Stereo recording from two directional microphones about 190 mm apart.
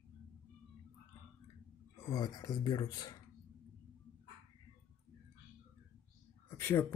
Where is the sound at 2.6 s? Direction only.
25° left (ahead or behind).